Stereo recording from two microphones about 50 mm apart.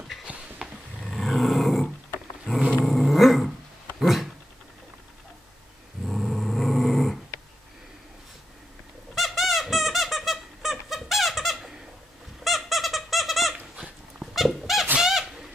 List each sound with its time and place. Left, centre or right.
0.3 s a sound: right
1.0 s roar: centre
2.5 s dog: left
2.8 s dog: centre
4.0 s a sound: centre
6.0 s dog: centre
9.1 s squeak: centre
12.4 s a sound: centre
14.3 s squeak: centre